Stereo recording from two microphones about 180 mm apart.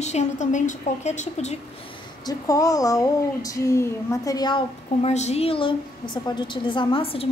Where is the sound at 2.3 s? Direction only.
20° left (ahead or behind).